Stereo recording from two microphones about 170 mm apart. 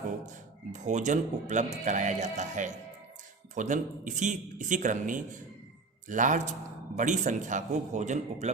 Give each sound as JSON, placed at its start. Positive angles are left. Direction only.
{"t": 0.7, "sound": "speech", "side_deg": -45}